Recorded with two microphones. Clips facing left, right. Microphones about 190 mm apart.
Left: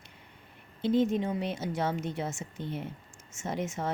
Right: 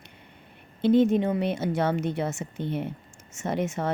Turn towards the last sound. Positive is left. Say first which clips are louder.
# right 5 dB
turn(degrees=-65)  # may be behind; listen again after turning